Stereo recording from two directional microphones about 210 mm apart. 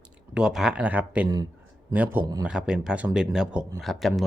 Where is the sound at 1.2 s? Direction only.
20° right (ahead or behind).